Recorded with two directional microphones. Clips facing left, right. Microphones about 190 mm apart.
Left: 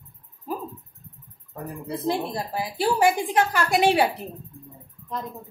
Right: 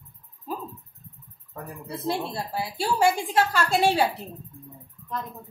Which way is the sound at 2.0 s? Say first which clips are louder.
Left 2 dB; 15° left (ahead or behind).